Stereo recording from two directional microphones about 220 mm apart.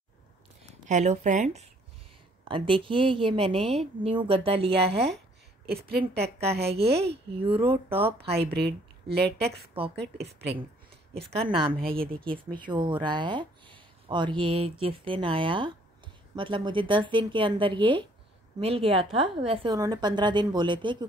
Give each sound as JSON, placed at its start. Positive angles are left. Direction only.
{"t": 0.8, "sound": "speech", "side_deg": -30}
{"t": 5.7, "sound": "a woman's voice", "side_deg": -45}
{"t": 7.3, "sound": "speech", "side_deg": -25}
{"t": 8.4, "sound": "a woman's voice", "side_deg": -45}
{"t": 11.4, "sound": "speech", "side_deg": -25}
{"t": 11.8, "sound": "a woman's voice", "side_deg": -45}
{"t": 12.2, "sound": "speech", "side_deg": 5}
{"t": 12.5, "sound": "speech", "side_deg": -20}